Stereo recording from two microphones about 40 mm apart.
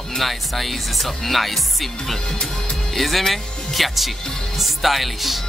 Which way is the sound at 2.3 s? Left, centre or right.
Centre.